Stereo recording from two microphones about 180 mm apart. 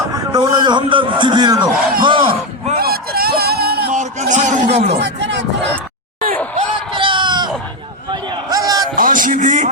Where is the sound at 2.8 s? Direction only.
60° right (ahead or behind).